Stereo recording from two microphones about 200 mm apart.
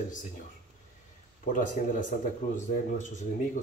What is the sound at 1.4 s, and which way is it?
Speech, 40° left (ahead or behind).